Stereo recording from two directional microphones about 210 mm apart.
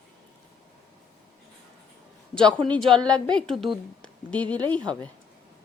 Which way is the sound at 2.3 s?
5° left (ahead or behind).